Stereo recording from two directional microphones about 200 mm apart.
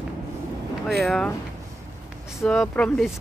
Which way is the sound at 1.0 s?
Centre (ahead or behind).